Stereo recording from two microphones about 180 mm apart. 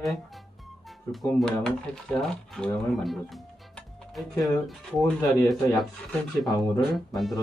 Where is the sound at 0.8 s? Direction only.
Centre (ahead or behind).